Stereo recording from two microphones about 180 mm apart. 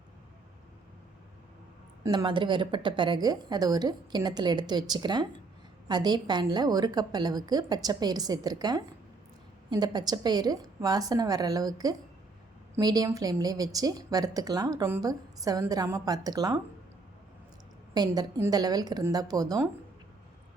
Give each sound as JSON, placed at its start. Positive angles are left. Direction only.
{"t": 2.0, "sound": "a woman's voice", "side_deg": -25}
{"t": 17.9, "sound": "a woman's voice", "side_deg": -20}